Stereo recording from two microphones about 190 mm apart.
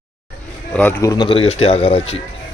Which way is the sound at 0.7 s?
10° left (ahead or behind).